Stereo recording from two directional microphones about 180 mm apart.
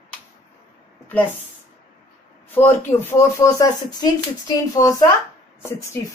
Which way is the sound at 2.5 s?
10° left (ahead or behind).